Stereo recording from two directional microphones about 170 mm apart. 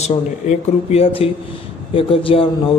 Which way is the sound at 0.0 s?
40° left (ahead or behind).